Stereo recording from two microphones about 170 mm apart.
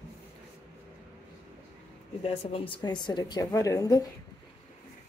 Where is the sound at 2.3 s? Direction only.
35° left (ahead or behind).